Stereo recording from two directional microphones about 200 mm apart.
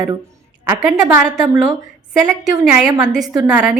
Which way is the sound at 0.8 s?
5° right (ahead or behind).